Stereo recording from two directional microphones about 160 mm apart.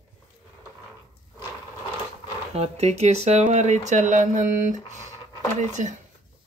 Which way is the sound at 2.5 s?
40° right (ahead or behind).